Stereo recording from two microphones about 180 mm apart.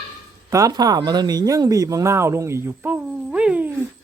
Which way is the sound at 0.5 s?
20° right (ahead or behind).